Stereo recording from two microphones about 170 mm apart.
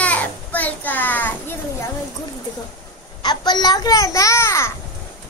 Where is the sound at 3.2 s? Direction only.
25° left (ahead or behind).